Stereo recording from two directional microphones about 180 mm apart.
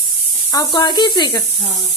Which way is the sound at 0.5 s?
20° left (ahead or behind).